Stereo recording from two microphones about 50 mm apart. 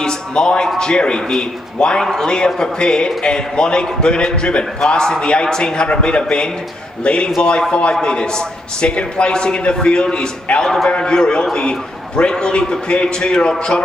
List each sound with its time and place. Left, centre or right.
0.0 s a man's voice: centre